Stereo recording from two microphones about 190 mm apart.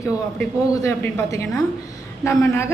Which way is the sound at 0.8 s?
15° left (ahead or behind).